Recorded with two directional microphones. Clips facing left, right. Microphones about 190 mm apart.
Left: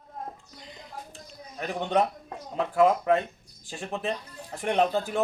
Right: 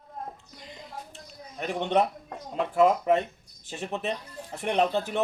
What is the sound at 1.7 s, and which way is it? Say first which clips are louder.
Speech: right 1 dB; 5° right (ahead or behind).